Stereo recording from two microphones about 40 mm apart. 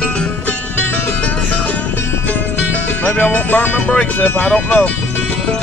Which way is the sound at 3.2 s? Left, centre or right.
Left.